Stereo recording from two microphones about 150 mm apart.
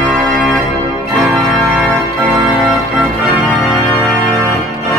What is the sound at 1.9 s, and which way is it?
Organ, centre (ahead or behind).